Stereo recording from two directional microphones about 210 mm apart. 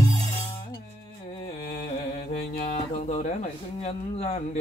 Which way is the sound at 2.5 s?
35° left (ahead or behind).